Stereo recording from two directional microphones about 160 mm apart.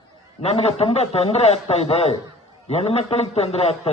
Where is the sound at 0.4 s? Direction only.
40° left (ahead or behind).